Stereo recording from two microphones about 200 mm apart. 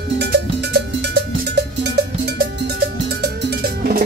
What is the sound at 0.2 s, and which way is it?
Cowbell, 55° right (ahead or behind).